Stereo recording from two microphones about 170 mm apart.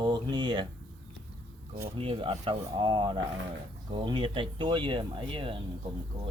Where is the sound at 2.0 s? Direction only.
30° right (ahead or behind).